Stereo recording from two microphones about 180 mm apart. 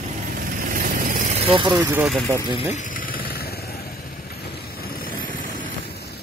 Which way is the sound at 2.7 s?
45° left (ahead or behind).